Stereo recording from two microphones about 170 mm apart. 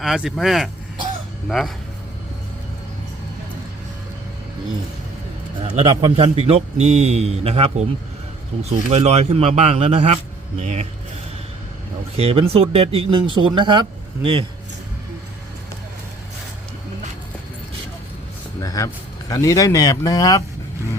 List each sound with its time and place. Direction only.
0.0 s speech: centre (ahead or behind)
5.8 s speech: 30° right (ahead or behind)
8.9 s speech: 40° right (ahead or behind)
12.1 s speech: 35° right (ahead or behind)
18.6 s a sound: 20° left (ahead or behind)
19.3 s speech: 20° left (ahead or behind)